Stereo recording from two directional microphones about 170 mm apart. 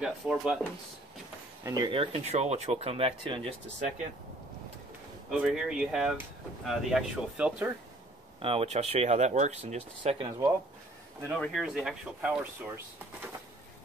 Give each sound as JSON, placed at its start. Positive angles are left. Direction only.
{"t": 0.0, "sound": "speech", "side_deg": -5}
{"t": 1.6, "sound": "speech", "side_deg": -20}
{"t": 5.4, "sound": "speech", "side_deg": -5}
{"t": 8.4, "sound": "speech", "side_deg": -35}
{"t": 11.3, "sound": "speech", "side_deg": 0}